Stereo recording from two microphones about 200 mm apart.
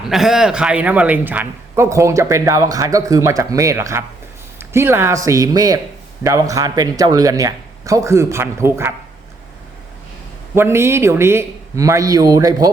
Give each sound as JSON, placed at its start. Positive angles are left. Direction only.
{"t": 0.1, "sound": "a man's voice", "side_deg": 0}
{"t": 10.5, "sound": "a man's voice", "side_deg": -10}